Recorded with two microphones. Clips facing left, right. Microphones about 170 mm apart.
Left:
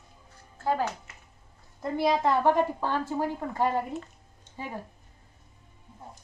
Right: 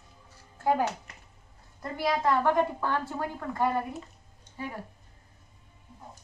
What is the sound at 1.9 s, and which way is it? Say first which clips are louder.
A woman's voice: left 2 dB; 25° left (ahead or behind).